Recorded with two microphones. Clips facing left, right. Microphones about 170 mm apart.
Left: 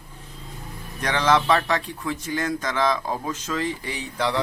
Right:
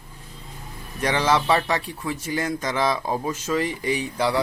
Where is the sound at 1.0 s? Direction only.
10° right (ahead or behind).